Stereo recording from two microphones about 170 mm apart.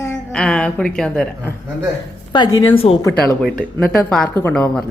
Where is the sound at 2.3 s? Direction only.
30° left (ahead or behind).